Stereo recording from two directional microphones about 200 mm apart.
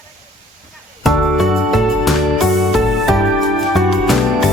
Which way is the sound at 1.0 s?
Centre (ahead or behind).